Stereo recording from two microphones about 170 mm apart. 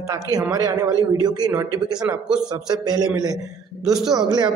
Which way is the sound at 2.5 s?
25° right (ahead or behind).